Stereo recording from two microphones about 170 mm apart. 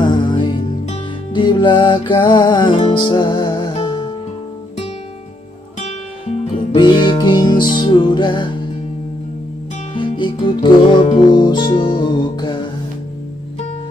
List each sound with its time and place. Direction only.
0.1 s music: 25° left (ahead or behind)
5.8 s music: 40° left (ahead or behind)
9.9 s music: 30° left (ahead or behind)